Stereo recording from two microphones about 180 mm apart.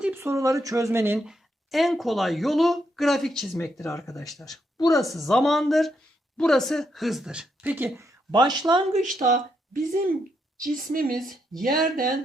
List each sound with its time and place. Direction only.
0.0 s a woman's voice: 15° right (ahead or behind)
3.8 s speech: 15° left (ahead or behind)
4.9 s a woman's voice: centre (ahead or behind); by 8.8 s 25° right (ahead or behind)
9.0 s speech: 45° right (ahead or behind)
11.1 s a woman's voice: centre (ahead or behind)
11.6 s speech: 50° right (ahead or behind)